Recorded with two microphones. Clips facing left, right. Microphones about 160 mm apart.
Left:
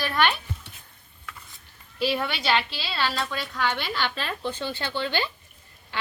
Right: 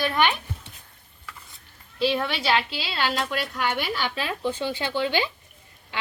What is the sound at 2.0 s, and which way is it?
Speech, 5° left (ahead or behind).